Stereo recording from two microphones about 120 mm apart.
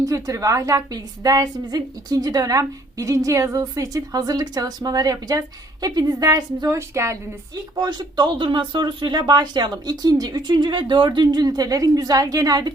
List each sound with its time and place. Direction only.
0.0 s a woman's voice: 30° right (ahead or behind)
7.8 s speech: 40° right (ahead or behind)